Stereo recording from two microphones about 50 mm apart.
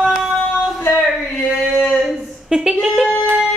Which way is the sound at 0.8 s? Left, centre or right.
Left.